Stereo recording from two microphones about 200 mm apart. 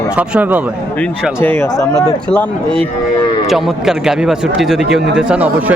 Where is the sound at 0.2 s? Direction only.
5° right (ahead or behind).